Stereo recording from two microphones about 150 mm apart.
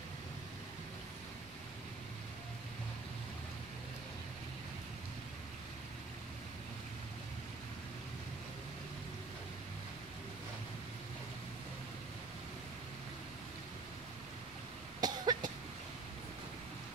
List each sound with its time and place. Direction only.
15.0 s cough: 25° right (ahead or behind)